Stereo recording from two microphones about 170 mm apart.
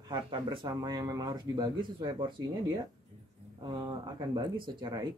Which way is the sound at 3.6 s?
25° right (ahead or behind).